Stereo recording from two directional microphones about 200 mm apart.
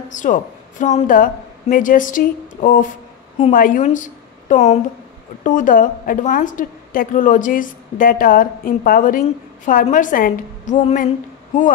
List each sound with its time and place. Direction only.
0.1 s a woman's voice: 40° left (ahead or behind)